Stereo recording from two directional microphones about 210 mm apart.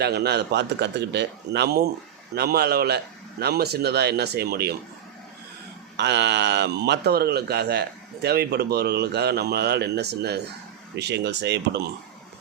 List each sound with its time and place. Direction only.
0.0 s speech: 50° right (ahead or behind)
6.0 s speech: 55° right (ahead or behind)